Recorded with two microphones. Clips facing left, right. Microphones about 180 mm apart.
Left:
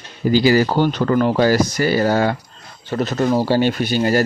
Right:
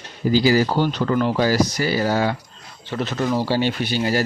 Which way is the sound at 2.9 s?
40° left (ahead or behind).